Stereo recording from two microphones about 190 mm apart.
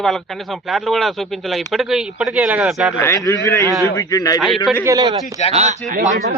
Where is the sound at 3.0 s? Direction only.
15° left (ahead or behind).